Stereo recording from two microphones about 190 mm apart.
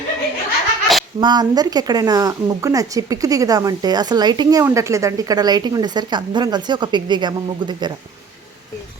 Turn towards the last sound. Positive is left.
turn(degrees=-25)  # may be behind; listen again after turning